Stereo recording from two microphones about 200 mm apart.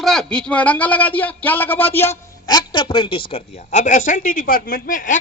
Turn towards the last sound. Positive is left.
turn(degrees=40)  # may be behind; listen again after turning